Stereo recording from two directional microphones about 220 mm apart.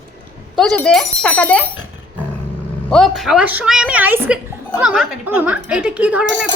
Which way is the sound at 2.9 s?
Centre (ahead or behind).